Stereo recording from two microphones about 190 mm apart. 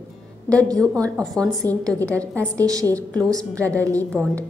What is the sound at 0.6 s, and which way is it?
A woman's voice, 5° left (ahead or behind).